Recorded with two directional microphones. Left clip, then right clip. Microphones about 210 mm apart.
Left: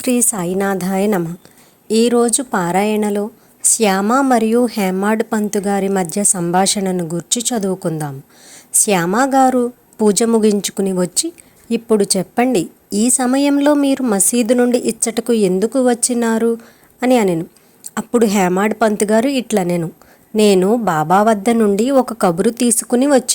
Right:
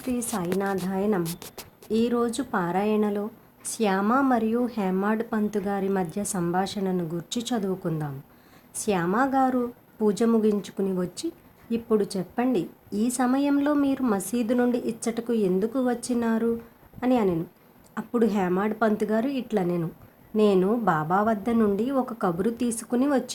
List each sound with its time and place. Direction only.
0.0 s speech: 45° left (ahead or behind)